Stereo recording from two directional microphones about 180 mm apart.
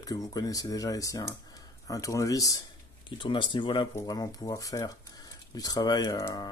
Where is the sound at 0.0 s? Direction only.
20° left (ahead or behind).